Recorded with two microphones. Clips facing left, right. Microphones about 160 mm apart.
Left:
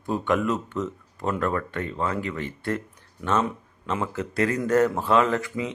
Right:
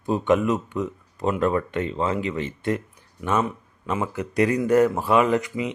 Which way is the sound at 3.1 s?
10° right (ahead or behind).